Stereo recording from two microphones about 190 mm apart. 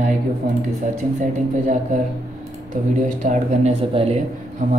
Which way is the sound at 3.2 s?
40° right (ahead or behind).